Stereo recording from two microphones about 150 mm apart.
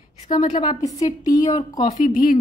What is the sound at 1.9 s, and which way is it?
Speech, 60° left (ahead or behind).